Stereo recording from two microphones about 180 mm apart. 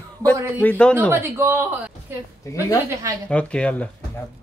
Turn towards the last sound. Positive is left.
turn(degrees=5)  # may be behind; listen again after turning